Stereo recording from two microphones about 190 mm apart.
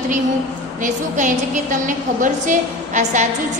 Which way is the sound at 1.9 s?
45° right (ahead or behind).